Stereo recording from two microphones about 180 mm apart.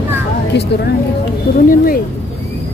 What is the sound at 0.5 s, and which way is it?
Speech, 65° left (ahead or behind).